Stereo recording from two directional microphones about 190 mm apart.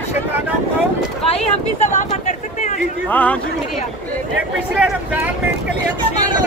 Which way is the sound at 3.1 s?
10° left (ahead or behind).